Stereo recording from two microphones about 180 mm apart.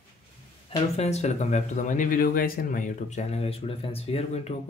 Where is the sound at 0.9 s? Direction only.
40° left (ahead or behind).